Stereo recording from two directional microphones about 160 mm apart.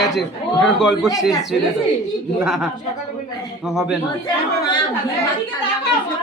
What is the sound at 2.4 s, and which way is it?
A man's voice, centre (ahead or behind).